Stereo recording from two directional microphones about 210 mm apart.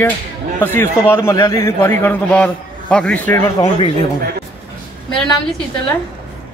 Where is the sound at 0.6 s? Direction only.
10° left (ahead or behind).